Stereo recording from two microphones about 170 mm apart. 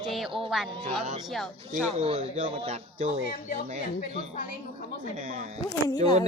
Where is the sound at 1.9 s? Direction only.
35° right (ahead or behind).